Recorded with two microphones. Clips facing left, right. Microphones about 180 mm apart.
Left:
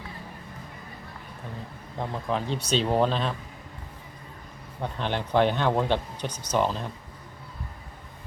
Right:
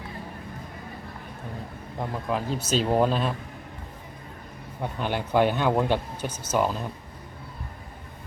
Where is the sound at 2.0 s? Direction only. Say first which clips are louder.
Even; 5° right (ahead or behind).